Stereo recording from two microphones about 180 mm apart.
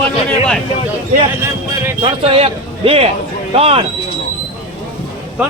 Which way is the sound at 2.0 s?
30° right (ahead or behind).